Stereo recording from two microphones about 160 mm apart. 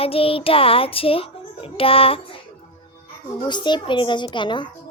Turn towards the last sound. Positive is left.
turn(degrees=30)  # may be behind; listen again after turning